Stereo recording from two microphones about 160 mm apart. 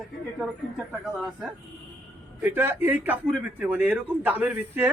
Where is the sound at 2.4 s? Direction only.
15° right (ahead or behind).